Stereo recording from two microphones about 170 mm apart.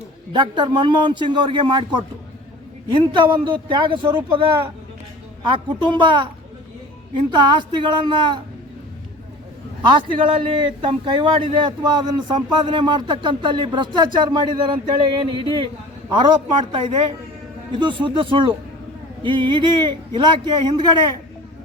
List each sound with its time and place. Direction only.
0.3 s a man's voice: 25° right (ahead or behind)
3.1 s a man's voice: 30° right (ahead or behind)
7.3 s a man's voice: 25° right (ahead or behind)
9.8 s a man's voice: 30° right (ahead or behind)